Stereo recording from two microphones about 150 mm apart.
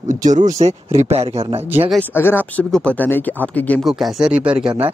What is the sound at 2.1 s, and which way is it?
Speech, 15° left (ahead or behind).